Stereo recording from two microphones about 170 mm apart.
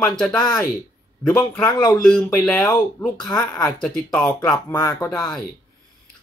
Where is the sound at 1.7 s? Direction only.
25° left (ahead or behind).